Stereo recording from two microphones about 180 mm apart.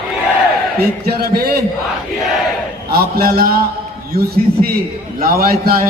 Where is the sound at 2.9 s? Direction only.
55° right (ahead or behind).